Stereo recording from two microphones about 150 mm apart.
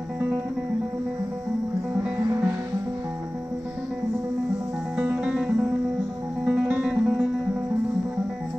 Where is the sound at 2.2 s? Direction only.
20° right (ahead or behind).